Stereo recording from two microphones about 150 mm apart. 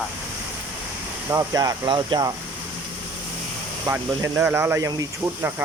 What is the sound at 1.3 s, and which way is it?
Speech, 25° right (ahead or behind).